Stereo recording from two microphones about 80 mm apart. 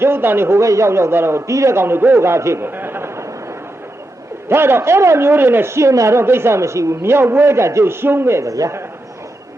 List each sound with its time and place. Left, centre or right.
0.0 s a man's voice: right
4.4 s a man's voice: right